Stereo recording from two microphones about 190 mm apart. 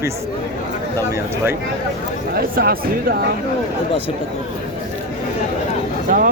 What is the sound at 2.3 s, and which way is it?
Speech, 50° right (ahead or behind).